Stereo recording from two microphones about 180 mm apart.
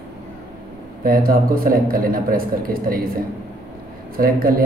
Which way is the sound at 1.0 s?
55° right (ahead or behind).